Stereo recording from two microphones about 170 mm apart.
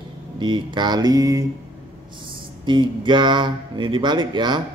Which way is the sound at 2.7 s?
25° right (ahead or behind).